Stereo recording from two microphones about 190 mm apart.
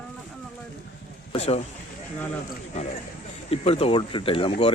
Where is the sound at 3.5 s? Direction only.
30° left (ahead or behind).